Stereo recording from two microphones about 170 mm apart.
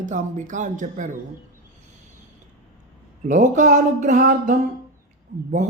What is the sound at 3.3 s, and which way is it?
A man's voice, 45° right (ahead or behind).